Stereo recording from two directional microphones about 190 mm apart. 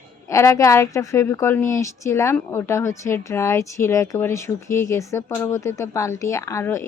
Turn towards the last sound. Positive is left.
turn(degrees=15)  # may be behind; listen again after turning